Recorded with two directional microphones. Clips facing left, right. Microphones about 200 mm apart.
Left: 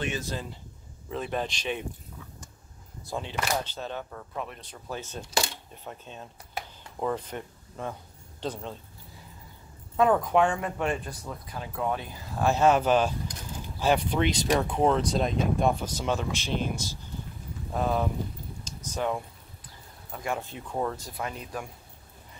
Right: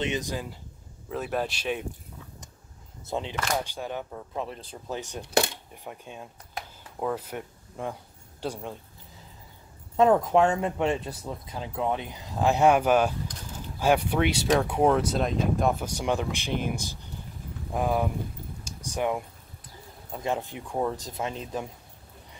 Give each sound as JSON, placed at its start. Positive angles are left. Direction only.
{"t": 0.0, "sound": "speech", "side_deg": -15}
{"t": 3.1, "sound": "speech", "side_deg": -20}
{"t": 5.2, "sound": "speech", "side_deg": -60}
{"t": 5.9, "sound": "speech", "side_deg": -10}
{"t": 6.5, "sound": "a sound", "side_deg": -5}
{"t": 8.4, "sound": "speech", "side_deg": -10}
{"t": 9.9, "sound": "speech", "side_deg": -25}
{"t": 16.7, "sound": "speech", "side_deg": -55}
{"t": 17.7, "sound": "speech", "side_deg": -10}
{"t": 18.6, "sound": "a sound", "side_deg": -10}
{"t": 20.1, "sound": "speech", "side_deg": -20}